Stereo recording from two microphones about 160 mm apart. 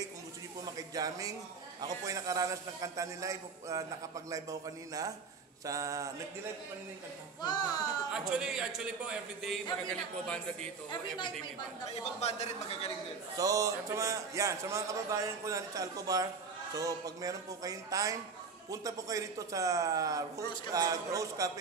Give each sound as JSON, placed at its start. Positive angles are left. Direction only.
{"t": 0.7, "sound": "a man's voice", "side_deg": -25}
{"t": 8.1, "sound": "a man's voice", "side_deg": -5}
{"t": 10.9, "sound": "speech", "side_deg": 30}
{"t": 11.9, "sound": "speech", "side_deg": 40}
{"t": 13.4, "sound": "a man's voice", "side_deg": -20}